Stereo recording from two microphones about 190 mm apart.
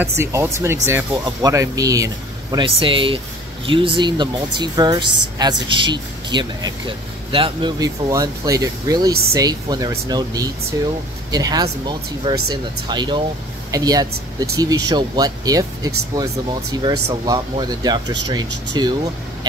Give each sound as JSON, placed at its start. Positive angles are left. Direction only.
{"t": 0.0, "sound": "speech", "side_deg": -15}